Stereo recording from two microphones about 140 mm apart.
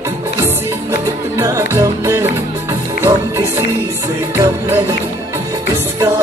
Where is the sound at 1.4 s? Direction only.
20° right (ahead or behind).